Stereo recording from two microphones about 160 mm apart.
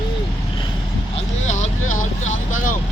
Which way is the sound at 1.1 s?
45° left (ahead or behind).